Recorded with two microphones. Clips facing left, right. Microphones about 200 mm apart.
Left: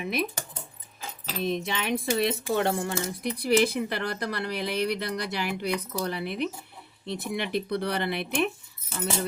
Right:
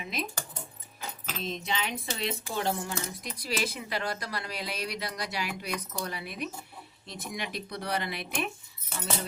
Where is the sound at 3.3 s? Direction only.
60° left (ahead or behind).